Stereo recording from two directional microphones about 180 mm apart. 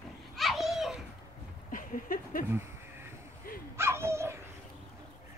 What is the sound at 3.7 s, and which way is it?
Dog, 15° right (ahead or behind).